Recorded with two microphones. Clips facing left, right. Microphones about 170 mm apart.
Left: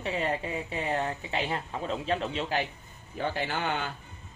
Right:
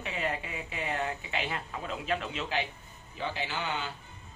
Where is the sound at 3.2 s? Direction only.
50° left (ahead or behind).